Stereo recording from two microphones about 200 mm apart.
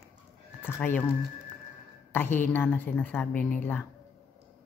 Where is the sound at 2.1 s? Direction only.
10° left (ahead or behind).